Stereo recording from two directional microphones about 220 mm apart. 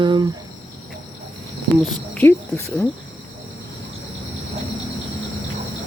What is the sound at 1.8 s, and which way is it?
Speech, 5° left (ahead or behind).